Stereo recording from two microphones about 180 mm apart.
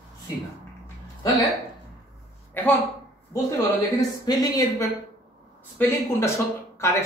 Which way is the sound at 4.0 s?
20° left (ahead or behind).